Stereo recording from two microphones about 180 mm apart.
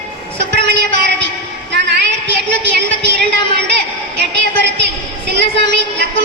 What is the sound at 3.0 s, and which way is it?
A woman's voice, 75° right (ahead or behind).